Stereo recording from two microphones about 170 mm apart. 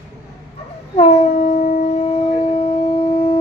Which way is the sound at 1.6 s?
40° left (ahead or behind).